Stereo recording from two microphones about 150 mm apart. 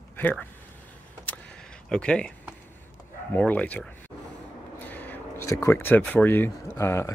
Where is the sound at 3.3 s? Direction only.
10° left (ahead or behind).